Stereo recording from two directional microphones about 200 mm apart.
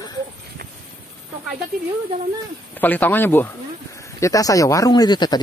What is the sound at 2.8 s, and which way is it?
Speech, 10° left (ahead or behind).